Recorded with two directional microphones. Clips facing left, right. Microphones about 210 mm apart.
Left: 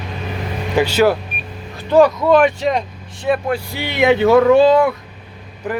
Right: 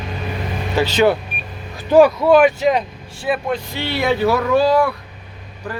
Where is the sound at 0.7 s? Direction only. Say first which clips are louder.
Left 1 dB; 10° left (ahead or behind).